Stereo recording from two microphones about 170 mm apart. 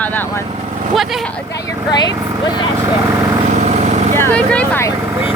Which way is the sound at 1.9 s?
25° left (ahead or behind).